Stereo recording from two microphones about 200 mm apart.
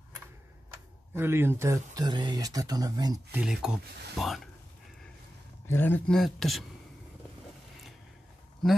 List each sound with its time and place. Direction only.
1.1 s speech: 10° right (ahead or behind)
5.7 s speech: 10° left (ahead or behind)